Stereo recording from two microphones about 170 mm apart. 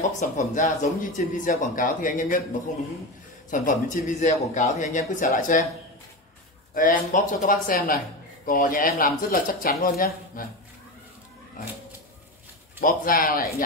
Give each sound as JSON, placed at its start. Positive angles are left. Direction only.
{"t": 0.2, "sound": "speech", "side_deg": 45}
{"t": 3.4, "sound": "speech", "side_deg": 50}
{"t": 6.7, "sound": "speech", "side_deg": 50}
{"t": 12.8, "sound": "speech", "side_deg": 55}